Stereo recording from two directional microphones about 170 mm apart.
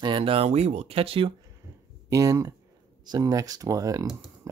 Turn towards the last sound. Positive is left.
turn(degrees=-20)  # may be behind; listen again after turning